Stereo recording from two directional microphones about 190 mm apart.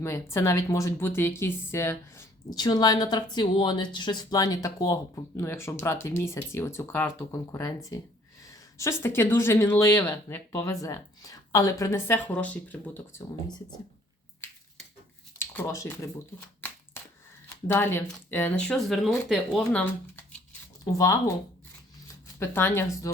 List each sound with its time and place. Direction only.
0.0 s speech: 15° left (ahead or behind)
8.8 s speech: 15° left (ahead or behind)
15.4 s speech: 15° left (ahead or behind)
17.7 s speech: 10° left (ahead or behind)
20.5 s a sound: 15° left (ahead or behind)
22.0 s speech: 15° left (ahead or behind)